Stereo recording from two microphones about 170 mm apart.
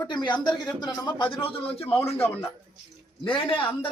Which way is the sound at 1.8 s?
15° left (ahead or behind).